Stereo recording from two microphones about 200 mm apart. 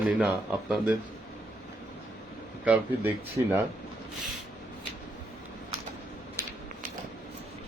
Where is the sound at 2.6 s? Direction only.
10° right (ahead or behind).